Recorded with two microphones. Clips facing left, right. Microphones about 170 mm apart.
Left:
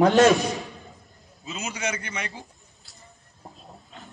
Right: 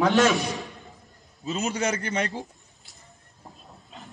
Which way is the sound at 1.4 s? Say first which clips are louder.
Right 5 dB; 40° right (ahead or behind).